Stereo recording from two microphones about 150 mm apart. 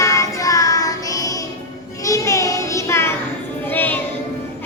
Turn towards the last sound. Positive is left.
turn(degrees=15)  # may be behind; listen again after turning